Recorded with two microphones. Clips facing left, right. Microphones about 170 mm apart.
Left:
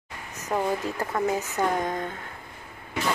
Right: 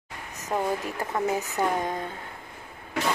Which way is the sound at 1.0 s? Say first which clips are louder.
Even; 15° right (ahead or behind).